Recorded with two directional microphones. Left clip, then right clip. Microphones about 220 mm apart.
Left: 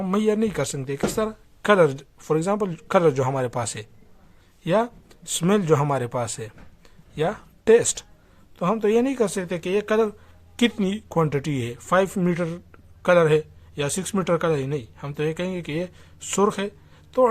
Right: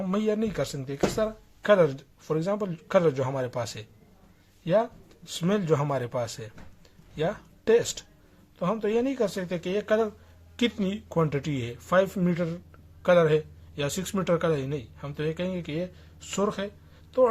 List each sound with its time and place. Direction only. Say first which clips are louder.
0.0 s speech: left 5 dB; 30° left (ahead or behind)